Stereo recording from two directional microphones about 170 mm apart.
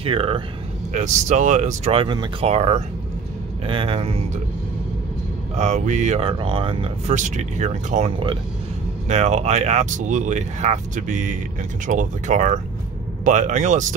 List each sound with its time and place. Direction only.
0.0 s speech: 30° right (ahead or behind)
0.9 s speech: 45° right (ahead or behind)
5.6 s speech: 45° right (ahead or behind)
7.2 s speech: 45° right (ahead or behind)